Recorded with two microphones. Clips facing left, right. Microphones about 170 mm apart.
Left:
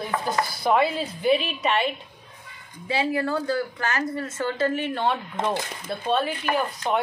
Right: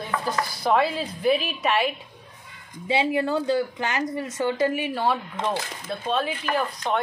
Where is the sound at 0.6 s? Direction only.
Centre (ahead or behind).